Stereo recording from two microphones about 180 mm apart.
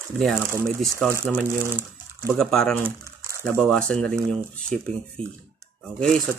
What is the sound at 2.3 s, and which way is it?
Speech, centre (ahead or behind).